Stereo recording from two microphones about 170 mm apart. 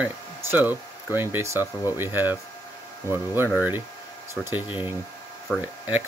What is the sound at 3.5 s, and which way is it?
Speech, 10° right (ahead or behind).